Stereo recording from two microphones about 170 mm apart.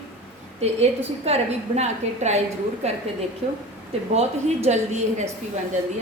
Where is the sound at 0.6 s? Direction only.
40° right (ahead or behind).